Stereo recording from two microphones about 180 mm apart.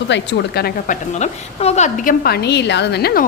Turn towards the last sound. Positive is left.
turn(degrees=65)  # may be behind; listen again after turning